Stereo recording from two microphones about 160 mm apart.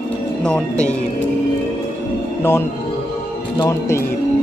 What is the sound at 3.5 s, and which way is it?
Speech, 25° left (ahead or behind).